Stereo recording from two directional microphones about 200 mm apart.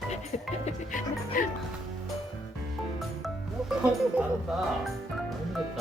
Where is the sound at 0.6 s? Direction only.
40° left (ahead or behind).